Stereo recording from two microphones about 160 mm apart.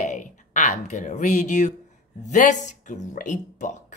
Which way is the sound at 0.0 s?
50° left (ahead or behind).